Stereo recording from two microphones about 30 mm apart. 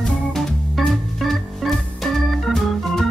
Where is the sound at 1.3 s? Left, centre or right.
Centre.